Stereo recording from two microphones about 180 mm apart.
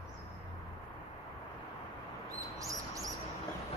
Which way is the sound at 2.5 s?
20° right (ahead or behind).